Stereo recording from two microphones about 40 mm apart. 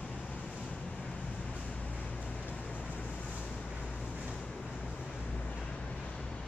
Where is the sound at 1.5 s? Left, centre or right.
Left.